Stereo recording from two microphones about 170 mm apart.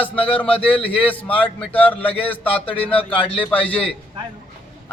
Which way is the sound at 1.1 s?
10° left (ahead or behind).